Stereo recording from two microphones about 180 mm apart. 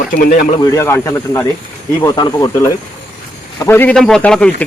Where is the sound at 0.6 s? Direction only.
15° left (ahead or behind).